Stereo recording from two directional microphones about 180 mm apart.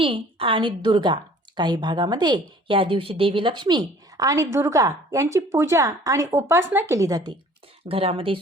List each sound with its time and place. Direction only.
0.0 s a woman's voice: 30° right (ahead or behind)
7.9 s speech: 30° right (ahead or behind)